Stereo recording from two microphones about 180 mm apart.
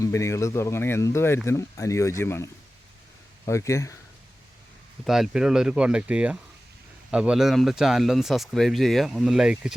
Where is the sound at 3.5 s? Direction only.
15° left (ahead or behind).